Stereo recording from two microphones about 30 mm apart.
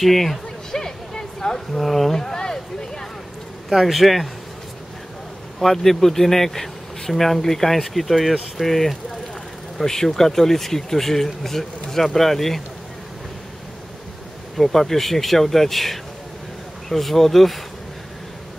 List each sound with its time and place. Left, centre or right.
0.0 s speech: centre
0.7 s a sound: left
1.7 s a man's voice: centre
2.1 s a sound: centre
3.6 s a man's voice: centre
5.6 s speech: centre
9.8 s speech: centre
14.6 s a man's voice: centre